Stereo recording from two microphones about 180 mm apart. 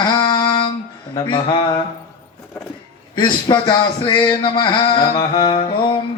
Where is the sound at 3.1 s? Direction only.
25° left (ahead or behind).